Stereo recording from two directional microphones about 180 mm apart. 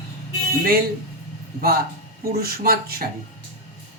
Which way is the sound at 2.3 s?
55° right (ahead or behind).